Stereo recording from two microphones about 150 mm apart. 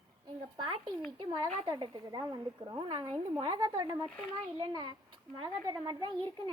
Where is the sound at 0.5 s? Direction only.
30° right (ahead or behind).